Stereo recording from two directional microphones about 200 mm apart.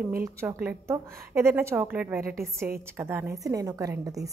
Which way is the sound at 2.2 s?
45° right (ahead or behind).